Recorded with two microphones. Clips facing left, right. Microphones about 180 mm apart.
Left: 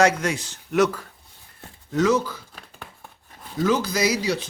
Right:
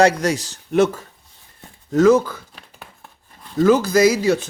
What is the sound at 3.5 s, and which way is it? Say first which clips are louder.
Speech: right 8 dB; 50° right (ahead or behind).